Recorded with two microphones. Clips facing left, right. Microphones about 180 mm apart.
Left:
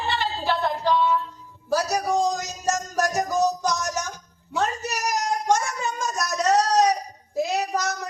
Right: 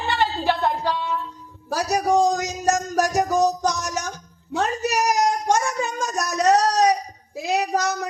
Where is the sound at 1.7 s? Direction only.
60° right (ahead or behind).